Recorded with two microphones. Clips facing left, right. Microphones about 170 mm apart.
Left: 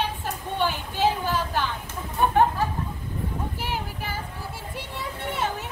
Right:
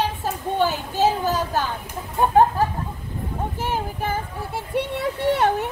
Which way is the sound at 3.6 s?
50° right (ahead or behind).